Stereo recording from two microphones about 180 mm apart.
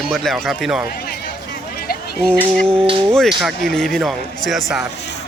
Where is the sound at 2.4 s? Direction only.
5° left (ahead or behind).